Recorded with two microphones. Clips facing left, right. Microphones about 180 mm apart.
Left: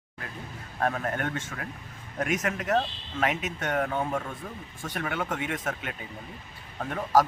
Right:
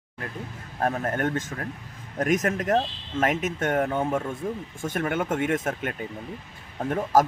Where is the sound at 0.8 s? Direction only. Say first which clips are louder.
Right 3 dB; 35° right (ahead or behind).